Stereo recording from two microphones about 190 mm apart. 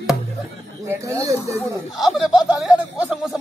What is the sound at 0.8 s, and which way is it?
Speech, 15° right (ahead or behind).